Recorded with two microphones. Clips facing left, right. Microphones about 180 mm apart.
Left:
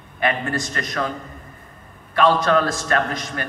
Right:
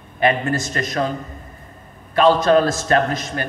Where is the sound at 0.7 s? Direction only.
25° right (ahead or behind).